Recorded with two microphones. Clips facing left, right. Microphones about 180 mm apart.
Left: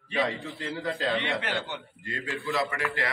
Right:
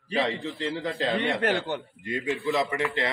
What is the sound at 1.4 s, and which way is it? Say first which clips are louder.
Speech: right 7 dB; 45° right (ahead or behind).